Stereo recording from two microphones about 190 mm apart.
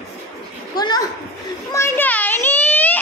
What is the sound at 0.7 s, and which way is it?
Children playing, 20° left (ahead or behind).